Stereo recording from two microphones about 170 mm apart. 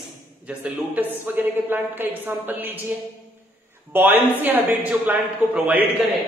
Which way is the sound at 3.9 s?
10° right (ahead or behind).